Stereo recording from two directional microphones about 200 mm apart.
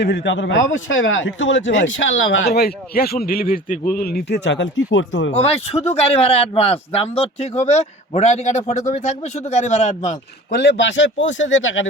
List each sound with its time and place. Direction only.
0.0 s speech: 60° left (ahead or behind)
5.3 s speech: 30° left (ahead or behind)
10.6 s speech: 60° left (ahead or behind)